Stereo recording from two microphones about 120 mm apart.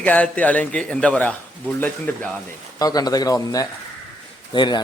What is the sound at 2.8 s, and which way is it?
Speech, 30° left (ahead or behind).